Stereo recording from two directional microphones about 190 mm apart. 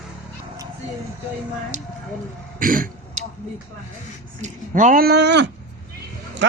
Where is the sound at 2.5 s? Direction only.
45° right (ahead or behind).